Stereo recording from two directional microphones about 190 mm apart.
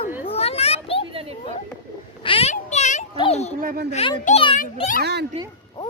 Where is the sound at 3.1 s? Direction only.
30° left (ahead or behind).